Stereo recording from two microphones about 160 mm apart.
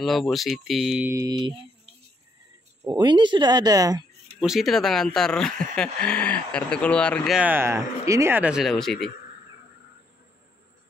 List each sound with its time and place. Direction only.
0.0 s speech: centre (ahead or behind)
1.0 s speech: 20° right (ahead or behind)
2.8 s speech: 25° right (ahead or behind)
4.4 s speech: centre (ahead or behind)
7.3 s speech: 10° right (ahead or behind)